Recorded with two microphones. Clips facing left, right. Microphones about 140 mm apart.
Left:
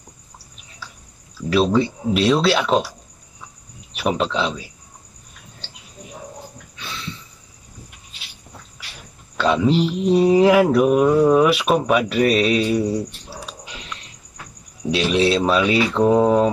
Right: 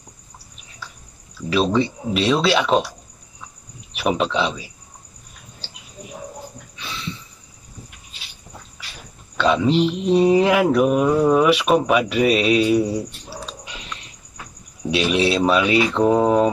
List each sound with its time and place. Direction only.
1.5 s mantra: 5° left (ahead or behind)
3.9 s mantra: centre (ahead or behind)
9.4 s mantra: centre (ahead or behind)
14.9 s mantra: 5° right (ahead or behind)